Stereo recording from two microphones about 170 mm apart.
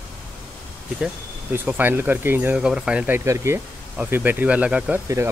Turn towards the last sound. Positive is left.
turn(degrees=-15)  # may be behind; listen again after turning